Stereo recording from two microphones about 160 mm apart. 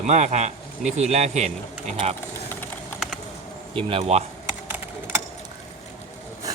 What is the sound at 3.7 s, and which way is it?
Speech, 40° right (ahead or behind).